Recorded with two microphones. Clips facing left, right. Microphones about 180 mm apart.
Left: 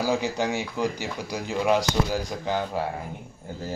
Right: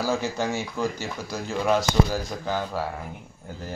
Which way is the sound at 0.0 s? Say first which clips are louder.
Left 1 dB; 15° left (ahead or behind).